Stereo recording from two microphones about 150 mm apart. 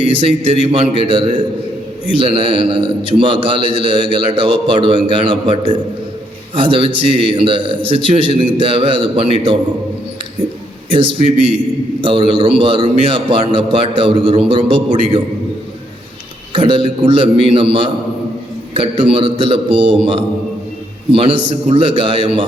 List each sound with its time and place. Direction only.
0.0 s a man's voice: 35° right (ahead or behind)
12.0 s a man's voice: 35° right (ahead or behind)
16.5 s a man's voice: 35° right (ahead or behind)